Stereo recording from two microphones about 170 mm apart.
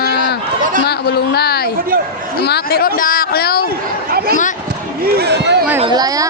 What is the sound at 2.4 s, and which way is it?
Speech, 75° left (ahead or behind).